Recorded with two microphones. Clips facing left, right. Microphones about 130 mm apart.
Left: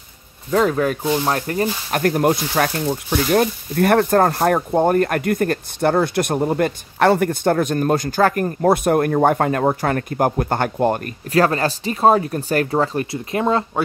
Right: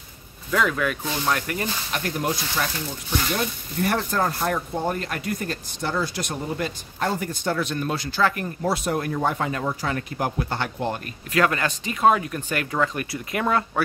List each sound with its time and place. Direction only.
0.5 s speech: 35° left (ahead or behind)
1.9 s speech: 50° left (ahead or behind)
11.3 s speech: 35° left (ahead or behind)